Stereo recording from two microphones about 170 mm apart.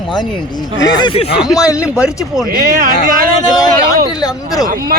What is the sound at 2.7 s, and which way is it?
Speech, 55° right (ahead or behind).